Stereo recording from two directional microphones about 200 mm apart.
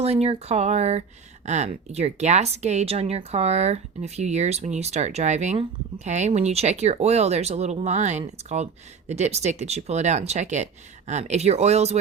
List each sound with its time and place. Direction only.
0.0 s speech: 30° right (ahead or behind)